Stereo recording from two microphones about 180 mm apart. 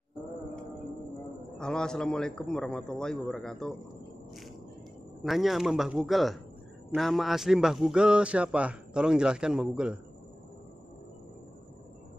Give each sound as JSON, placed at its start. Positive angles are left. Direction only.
{"t": 1.6, "sound": "a man's voice", "side_deg": 5}
{"t": 5.2, "sound": "a man's voice", "side_deg": 0}